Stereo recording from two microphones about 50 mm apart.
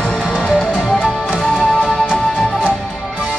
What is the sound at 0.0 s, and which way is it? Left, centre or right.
Music, centre.